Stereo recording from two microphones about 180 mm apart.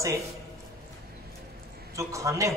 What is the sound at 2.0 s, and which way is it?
Speech, 15° right (ahead or behind).